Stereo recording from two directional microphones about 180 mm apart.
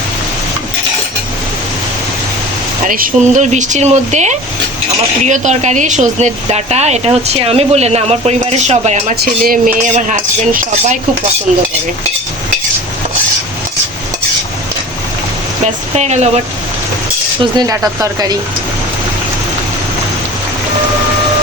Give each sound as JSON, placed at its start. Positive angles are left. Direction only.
{"t": 2.8, "sound": "speech", "side_deg": -50}
{"t": 9.2, "sound": "speech", "side_deg": -55}
{"t": 15.6, "sound": "speech", "side_deg": -40}
{"t": 17.4, "sound": "speech", "side_deg": -20}